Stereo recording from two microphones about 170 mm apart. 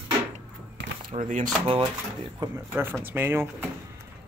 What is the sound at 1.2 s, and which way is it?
Speech, 50° right (ahead or behind).